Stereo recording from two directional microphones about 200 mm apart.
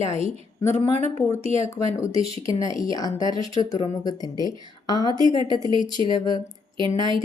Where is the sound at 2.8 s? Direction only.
20° left (ahead or behind).